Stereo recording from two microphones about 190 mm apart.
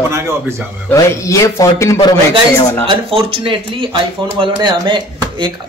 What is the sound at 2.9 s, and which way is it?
Speech, 30° right (ahead or behind).